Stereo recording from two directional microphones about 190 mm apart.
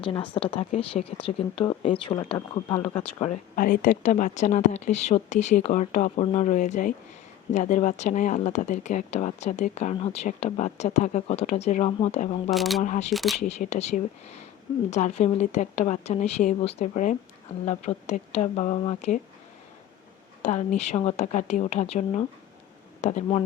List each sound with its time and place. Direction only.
0.0 s speech: 25° left (ahead or behind)
12.5 s speech: centre (ahead or behind)
12.8 s speech: 40° left (ahead or behind)
13.1 s speech: centre (ahead or behind)
13.4 s speech: 40° left (ahead or behind)
20.4 s speech: 40° left (ahead or behind)